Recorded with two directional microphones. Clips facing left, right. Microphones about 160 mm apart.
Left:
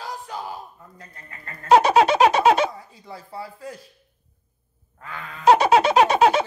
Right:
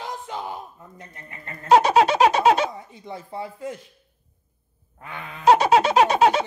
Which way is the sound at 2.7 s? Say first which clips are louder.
Right 3 dB; 20° right (ahead or behind).